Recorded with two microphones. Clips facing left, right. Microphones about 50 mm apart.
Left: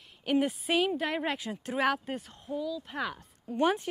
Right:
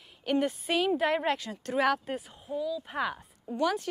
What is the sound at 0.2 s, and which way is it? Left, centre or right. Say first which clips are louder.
A woman's voice: even; centre.